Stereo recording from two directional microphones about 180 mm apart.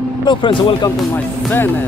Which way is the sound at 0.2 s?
25° left (ahead or behind).